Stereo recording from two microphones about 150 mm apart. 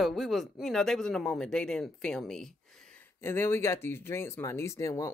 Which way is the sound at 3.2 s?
15° left (ahead or behind).